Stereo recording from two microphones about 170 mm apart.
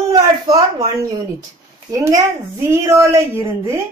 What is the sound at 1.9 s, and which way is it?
A woman's voice, 20° right (ahead or behind).